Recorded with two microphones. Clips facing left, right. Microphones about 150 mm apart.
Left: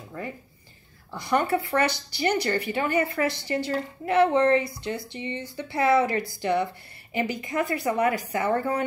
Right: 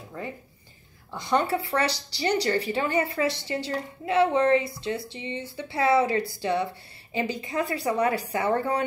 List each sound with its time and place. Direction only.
1.1 s speech: 25° right (ahead or behind)